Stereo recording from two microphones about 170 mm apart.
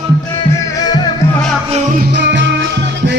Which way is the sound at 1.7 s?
45° right (ahead or behind).